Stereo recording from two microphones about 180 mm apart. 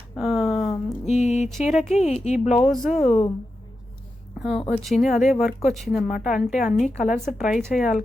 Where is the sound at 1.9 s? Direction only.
40° left (ahead or behind).